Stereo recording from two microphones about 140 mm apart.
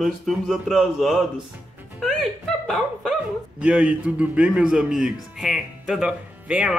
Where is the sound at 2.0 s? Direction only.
Centre (ahead or behind).